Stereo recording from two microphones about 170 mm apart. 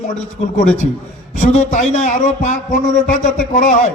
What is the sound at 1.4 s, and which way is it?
Speech, 45° left (ahead or behind).